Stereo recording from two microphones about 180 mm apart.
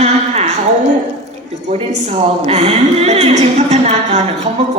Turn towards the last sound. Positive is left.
turn(degrees=-40)  # may be behind; listen again after turning